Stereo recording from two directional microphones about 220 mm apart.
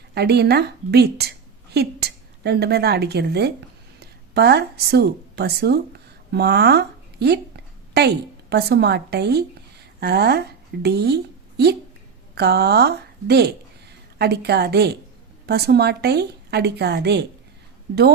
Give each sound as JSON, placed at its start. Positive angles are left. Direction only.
{"t": 0.1, "sound": "a woman's voice", "side_deg": -50}